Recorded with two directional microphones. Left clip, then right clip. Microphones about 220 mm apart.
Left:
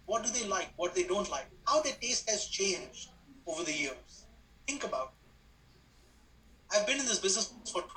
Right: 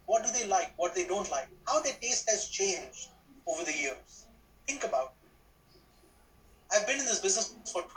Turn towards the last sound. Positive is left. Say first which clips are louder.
# right 2 dB
turn(degrees=25)  # may be behind; listen again after turning